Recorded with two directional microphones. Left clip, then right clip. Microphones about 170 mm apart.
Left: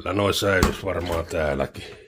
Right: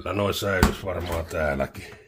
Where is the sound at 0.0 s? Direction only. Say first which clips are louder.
Left 4 dB; 20° left (ahead or behind).